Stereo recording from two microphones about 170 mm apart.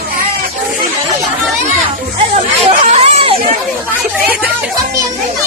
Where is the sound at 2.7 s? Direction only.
40° right (ahead or behind).